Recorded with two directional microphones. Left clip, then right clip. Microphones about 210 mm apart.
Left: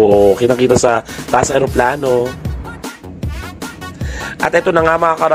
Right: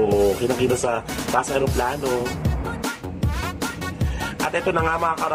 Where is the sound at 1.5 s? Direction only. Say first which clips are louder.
Left 9 dB; 40° left (ahead or behind).